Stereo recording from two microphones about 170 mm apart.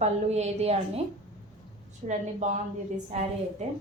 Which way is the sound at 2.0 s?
45° right (ahead or behind).